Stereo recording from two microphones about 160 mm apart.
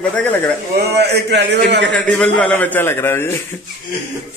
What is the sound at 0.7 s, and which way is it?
Speech, 90° right.